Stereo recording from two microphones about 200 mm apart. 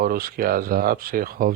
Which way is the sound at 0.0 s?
45° right (ahead or behind).